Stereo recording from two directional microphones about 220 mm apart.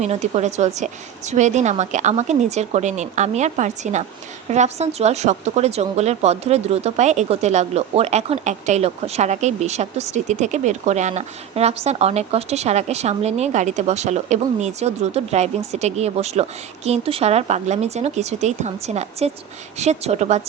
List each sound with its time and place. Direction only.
0.0 s a woman's voice: 30° right (ahead or behind)